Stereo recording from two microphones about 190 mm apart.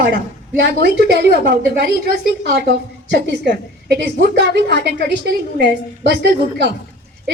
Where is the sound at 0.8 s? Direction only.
60° right (ahead or behind).